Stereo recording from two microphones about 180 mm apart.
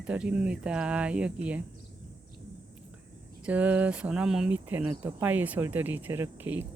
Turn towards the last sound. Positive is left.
turn(degrees=-10)  # may be behind; listen again after turning